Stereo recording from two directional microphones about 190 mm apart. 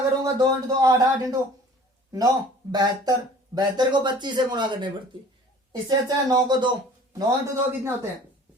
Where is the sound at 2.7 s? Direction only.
20° right (ahead or behind).